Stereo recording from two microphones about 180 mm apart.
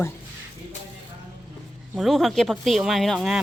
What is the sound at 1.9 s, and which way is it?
Speech, centre (ahead or behind).